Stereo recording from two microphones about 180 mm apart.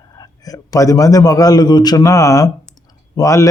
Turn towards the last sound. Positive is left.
turn(degrees=20)  # may be behind; listen again after turning